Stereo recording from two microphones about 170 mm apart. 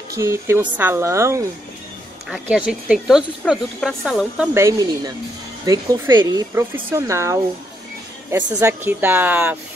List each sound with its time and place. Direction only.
0.1 s speech: 15° right (ahead or behind)
2.2 s speech: 5° right (ahead or behind)
4.6 s speech: 20° right (ahead or behind)